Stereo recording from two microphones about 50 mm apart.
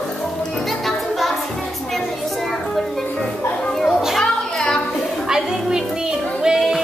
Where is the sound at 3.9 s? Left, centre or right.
Centre.